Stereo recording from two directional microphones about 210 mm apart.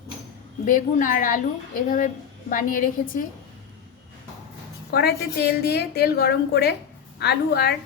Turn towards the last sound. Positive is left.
turn(degrees=50)  # may be behind; listen again after turning